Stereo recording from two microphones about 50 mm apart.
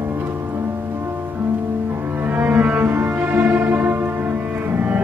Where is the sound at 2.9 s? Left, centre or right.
Right.